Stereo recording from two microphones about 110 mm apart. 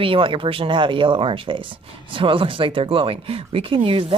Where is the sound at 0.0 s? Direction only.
55° right (ahead or behind).